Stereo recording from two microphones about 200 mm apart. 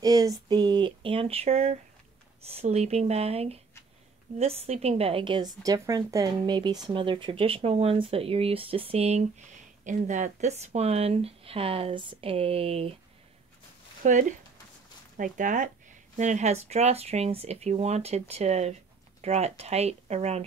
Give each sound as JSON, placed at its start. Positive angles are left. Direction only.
{"t": 0.0, "sound": "a sound", "side_deg": -20}
{"t": 2.4, "sound": "a woman's voice", "side_deg": -30}
{"t": 14.0, "sound": "speech", "side_deg": -40}